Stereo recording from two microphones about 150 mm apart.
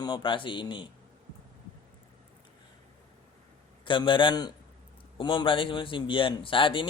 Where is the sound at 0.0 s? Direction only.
30° left (ahead or behind).